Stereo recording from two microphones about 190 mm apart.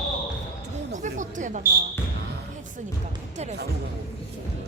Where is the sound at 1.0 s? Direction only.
40° right (ahead or behind).